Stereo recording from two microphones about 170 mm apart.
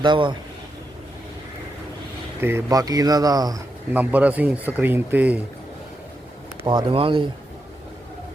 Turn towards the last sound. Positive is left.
turn(degrees=-30)  # may be behind; listen again after turning